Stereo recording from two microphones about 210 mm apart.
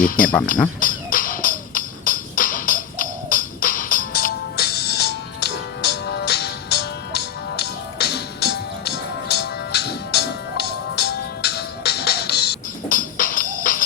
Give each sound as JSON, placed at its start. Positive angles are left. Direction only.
{"t": 0.0, "sound": "speech", "side_deg": 40}
{"t": 0.8, "sound": "music", "side_deg": 40}